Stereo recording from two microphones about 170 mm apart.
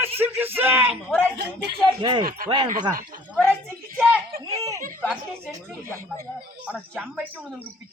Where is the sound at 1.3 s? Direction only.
75° right (ahead or behind).